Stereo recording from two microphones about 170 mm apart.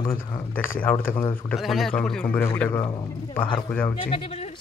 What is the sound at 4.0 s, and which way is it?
Speech, 35° left (ahead or behind).